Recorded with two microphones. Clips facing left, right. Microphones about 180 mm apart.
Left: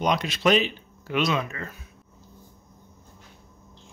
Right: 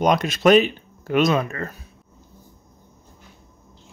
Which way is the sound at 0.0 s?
50° right (ahead or behind).